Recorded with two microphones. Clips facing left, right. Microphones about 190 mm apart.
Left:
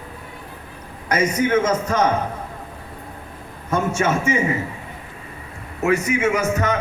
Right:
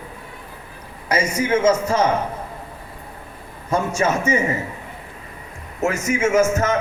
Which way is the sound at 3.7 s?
35° right (ahead or behind).